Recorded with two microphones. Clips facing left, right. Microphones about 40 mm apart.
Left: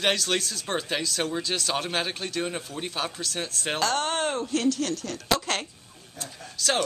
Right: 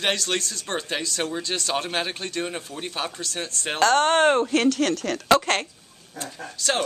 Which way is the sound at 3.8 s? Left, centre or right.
Right.